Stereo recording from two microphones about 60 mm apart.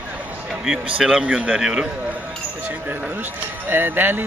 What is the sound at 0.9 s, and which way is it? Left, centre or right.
Speech, centre.